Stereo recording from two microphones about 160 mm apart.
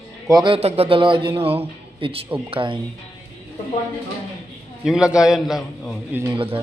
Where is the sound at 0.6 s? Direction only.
40° right (ahead or behind).